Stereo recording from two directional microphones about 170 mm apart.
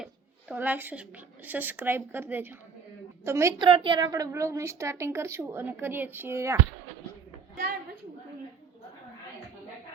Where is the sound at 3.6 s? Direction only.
30° right (ahead or behind).